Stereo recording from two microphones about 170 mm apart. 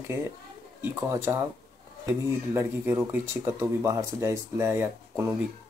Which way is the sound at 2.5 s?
15° right (ahead or behind).